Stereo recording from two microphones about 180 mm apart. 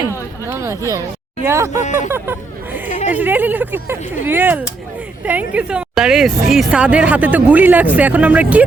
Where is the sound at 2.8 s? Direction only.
40° left (ahead or behind).